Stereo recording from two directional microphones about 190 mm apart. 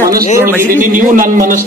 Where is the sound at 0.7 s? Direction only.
45° right (ahead or behind).